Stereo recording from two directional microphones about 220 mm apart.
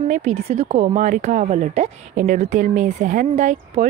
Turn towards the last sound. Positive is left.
turn(degrees=-30)  # may be behind; listen again after turning